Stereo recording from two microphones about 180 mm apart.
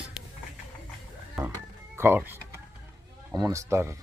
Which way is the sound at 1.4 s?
15° right (ahead or behind).